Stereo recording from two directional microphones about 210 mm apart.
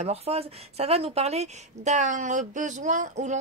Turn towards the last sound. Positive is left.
turn(degrees=-35)  # may be behind; listen again after turning